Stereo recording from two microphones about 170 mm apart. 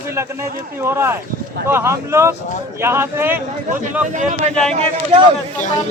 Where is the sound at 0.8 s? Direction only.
15° right (ahead or behind).